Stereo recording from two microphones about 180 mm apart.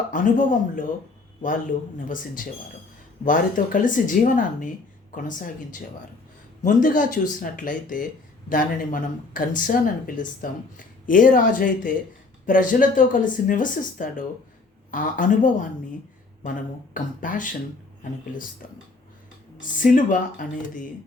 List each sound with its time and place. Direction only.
0.1 s speech: 45° left (ahead or behind)
2.0 s a woman's voice: 50° left (ahead or behind)
19.5 s speech: 45° left (ahead or behind)